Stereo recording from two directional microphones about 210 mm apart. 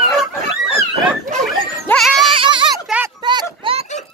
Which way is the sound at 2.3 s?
25° right (ahead or behind).